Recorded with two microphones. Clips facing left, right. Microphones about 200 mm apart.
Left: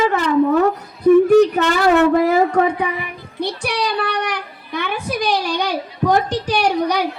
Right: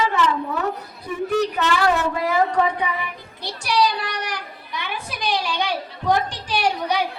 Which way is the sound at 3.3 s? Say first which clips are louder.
Even; 55° left (ahead or behind).